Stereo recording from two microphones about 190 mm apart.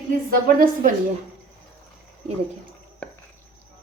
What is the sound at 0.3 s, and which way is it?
Speech, 50° right (ahead or behind).